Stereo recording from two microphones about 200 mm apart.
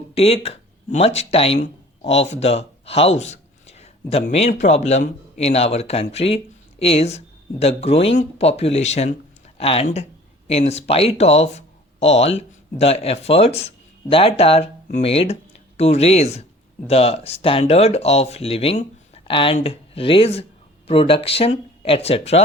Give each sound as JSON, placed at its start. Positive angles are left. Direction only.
{"t": 0.1, "sound": "speech", "side_deg": 30}